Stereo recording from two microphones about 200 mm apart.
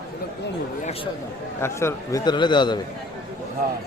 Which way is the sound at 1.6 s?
15° left (ahead or behind).